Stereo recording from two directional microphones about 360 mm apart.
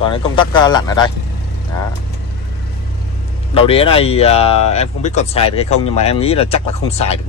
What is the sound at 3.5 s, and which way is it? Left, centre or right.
Speech, centre.